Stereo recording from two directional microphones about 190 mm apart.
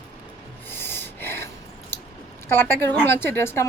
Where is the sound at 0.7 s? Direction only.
10° left (ahead or behind).